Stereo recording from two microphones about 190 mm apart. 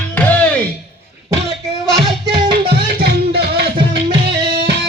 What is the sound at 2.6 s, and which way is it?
Music, 55° right (ahead or behind).